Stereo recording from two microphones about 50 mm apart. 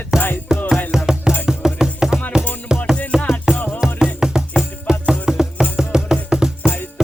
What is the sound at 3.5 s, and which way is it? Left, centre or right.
Music, left.